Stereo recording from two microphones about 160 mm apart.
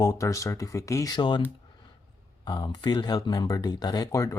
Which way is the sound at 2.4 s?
25° left (ahead or behind).